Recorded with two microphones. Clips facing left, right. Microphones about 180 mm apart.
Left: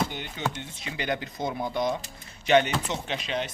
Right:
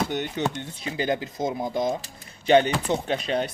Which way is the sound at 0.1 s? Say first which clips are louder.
Right 9 dB; 45° right (ahead or behind).